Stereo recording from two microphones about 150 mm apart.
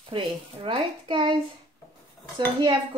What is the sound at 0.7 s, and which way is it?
Speech, 30° right (ahead or behind).